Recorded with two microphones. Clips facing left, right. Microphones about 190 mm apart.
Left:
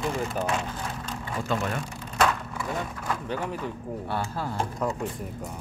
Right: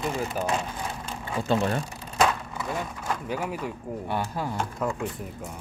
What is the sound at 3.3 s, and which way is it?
Speech, 10° right (ahead or behind).